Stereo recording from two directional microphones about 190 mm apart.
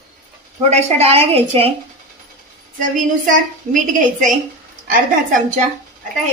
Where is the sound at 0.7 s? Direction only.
35° right (ahead or behind).